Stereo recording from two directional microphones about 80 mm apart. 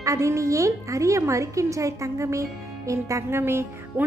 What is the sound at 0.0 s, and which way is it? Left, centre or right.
A woman's voice, right.